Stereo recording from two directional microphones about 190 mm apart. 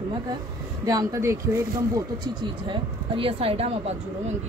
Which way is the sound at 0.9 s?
20° right (ahead or behind).